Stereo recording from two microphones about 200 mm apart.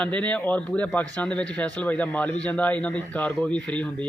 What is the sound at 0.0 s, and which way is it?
Speech, 5° left (ahead or behind).